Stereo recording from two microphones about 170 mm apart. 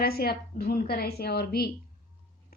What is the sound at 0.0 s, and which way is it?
A woman's voice, 65° left (ahead or behind).